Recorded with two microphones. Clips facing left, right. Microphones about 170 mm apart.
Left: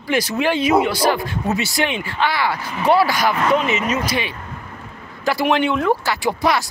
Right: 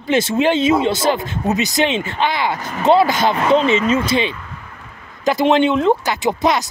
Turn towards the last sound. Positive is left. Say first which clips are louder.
# right 2 dB
turn(degrees=-20)  # may be behind; listen again after turning